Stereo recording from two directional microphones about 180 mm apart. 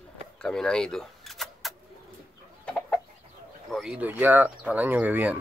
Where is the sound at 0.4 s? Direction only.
5° left (ahead or behind).